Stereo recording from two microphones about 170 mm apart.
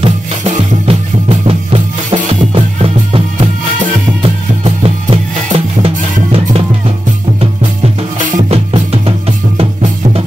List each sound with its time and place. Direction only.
0.0 s music: 45° right (ahead or behind)